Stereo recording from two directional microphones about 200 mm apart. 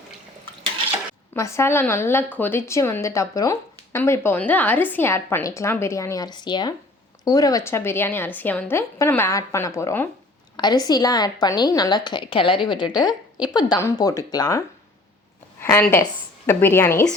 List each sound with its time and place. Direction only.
1.3 s a woman's voice: 15° left (ahead or behind)
15.6 s a woman's voice: 10° left (ahead or behind)